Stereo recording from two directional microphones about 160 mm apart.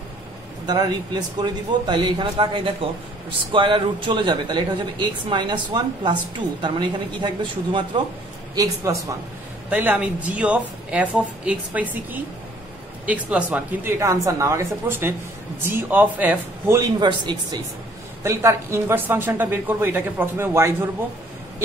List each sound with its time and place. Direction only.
0.7 s speech: 25° right (ahead or behind)
9.7 s speech: 10° right (ahead or behind); by 17.6 s 25° right (ahead or behind)
18.2 s speech: 15° right (ahead or behind)